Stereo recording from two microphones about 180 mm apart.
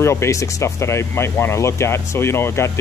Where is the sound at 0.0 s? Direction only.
15° left (ahead or behind).